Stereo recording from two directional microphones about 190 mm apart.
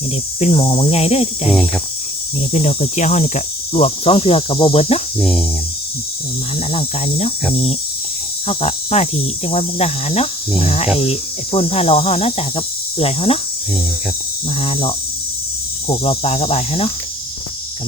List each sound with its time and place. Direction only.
0.3 s speech: 35° left (ahead or behind)
1.5 s speech: centre (ahead or behind)
2.5 s speech: 35° left (ahead or behind)
5.2 s speech: centre (ahead or behind)
6.7 s speech: 30° left (ahead or behind)
8.4 s speech: 35° left (ahead or behind)
14.6 s speech: 30° left (ahead or behind)
16.0 s speech: 35° left (ahead or behind)